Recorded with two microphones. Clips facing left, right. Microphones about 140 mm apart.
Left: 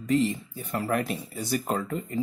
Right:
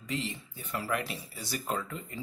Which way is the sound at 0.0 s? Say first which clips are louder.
Left 12 dB; 45° left (ahead or behind).